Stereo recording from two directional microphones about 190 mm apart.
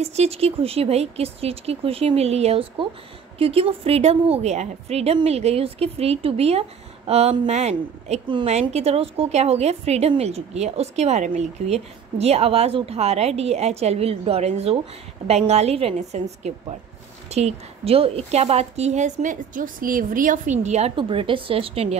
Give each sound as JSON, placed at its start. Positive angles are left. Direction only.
{"t": 0.0, "sound": "a woman's voice", "side_deg": -35}